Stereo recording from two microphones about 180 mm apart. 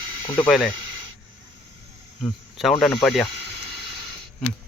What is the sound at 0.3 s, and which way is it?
Speech, 5° left (ahead or behind).